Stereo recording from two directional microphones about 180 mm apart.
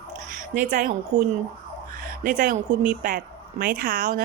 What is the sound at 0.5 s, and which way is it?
Speech, 45° right (ahead or behind).